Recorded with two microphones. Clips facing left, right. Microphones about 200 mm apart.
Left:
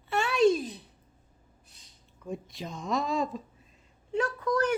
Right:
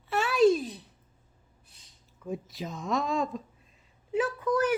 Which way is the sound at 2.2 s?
Centre (ahead or behind).